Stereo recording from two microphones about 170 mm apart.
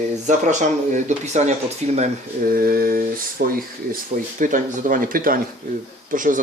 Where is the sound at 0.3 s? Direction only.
45° right (ahead or behind).